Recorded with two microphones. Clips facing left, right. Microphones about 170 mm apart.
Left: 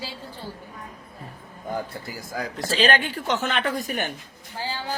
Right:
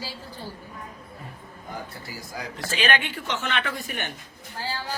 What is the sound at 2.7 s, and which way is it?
A man's voice, 35° left (ahead or behind).